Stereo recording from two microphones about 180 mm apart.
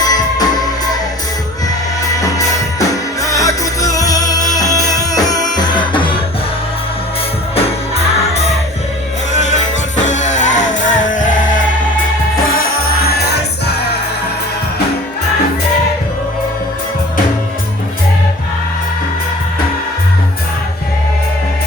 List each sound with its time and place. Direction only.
0.0 s music: 20° left (ahead or behind)
2.0 s music: 20° left (ahead or behind)
7.5 s music: 35° left (ahead or behind)